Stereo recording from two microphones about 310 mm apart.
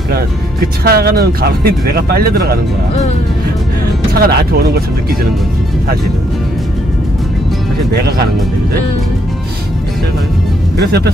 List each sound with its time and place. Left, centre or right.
0.1 s speech: right
4.2 s speech: right
10.8 s speech: right